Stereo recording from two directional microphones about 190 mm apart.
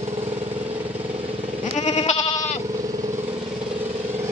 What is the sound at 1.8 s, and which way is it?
Goat, 35° left (ahead or behind).